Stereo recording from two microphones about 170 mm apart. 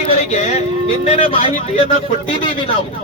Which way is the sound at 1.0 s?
45° left (ahead or behind).